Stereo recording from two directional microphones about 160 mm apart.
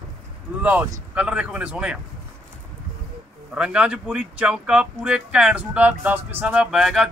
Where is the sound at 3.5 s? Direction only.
5° right (ahead or behind).